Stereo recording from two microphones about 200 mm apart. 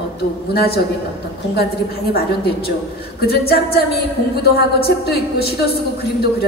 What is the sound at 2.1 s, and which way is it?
A woman's voice, 50° left (ahead or behind).